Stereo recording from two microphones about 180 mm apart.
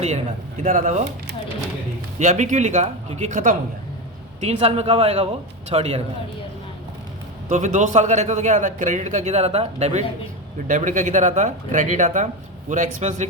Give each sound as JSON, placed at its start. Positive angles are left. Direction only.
{"t": 0.0, "sound": "a man's voice", "side_deg": -40}
{"t": 2.1, "sound": "a man's voice", "side_deg": -40}
{"t": 7.4, "sound": "a man's voice", "side_deg": -40}